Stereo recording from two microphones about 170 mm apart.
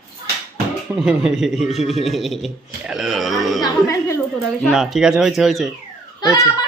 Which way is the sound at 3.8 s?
20° left (ahead or behind).